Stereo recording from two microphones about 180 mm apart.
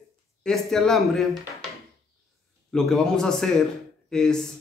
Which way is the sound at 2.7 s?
5° left (ahead or behind).